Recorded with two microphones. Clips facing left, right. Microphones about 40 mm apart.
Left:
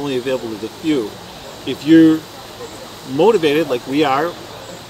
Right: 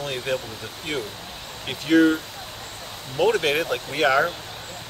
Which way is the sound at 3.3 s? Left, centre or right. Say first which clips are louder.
Left 8 dB; centre.